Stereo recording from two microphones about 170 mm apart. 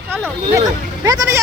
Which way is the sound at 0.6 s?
20° right (ahead or behind).